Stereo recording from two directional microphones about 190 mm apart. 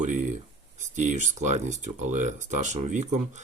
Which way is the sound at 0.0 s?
40° right (ahead or behind).